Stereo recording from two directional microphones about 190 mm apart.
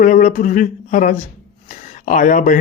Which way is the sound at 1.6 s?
40° left (ahead or behind).